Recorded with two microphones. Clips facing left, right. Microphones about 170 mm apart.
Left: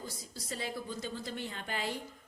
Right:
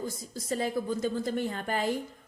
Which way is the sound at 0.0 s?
45° right (ahead or behind).